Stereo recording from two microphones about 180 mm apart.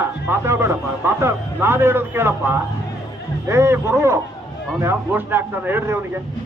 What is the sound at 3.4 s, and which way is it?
A man's voice, 15° right (ahead or behind).